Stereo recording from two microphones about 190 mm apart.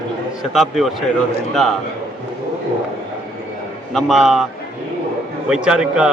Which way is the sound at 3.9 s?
Centre (ahead or behind).